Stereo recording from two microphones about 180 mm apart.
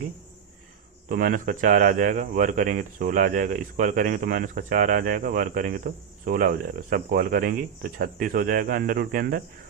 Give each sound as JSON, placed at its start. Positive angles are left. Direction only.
{"t": 1.0, "sound": "speech", "side_deg": -50}